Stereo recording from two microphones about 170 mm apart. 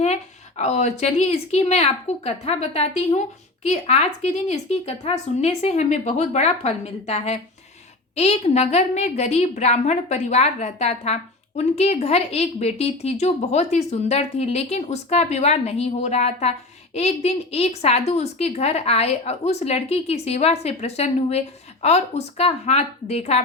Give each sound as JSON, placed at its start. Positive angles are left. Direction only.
{"t": 0.0, "sound": "a woman's voice", "side_deg": 40}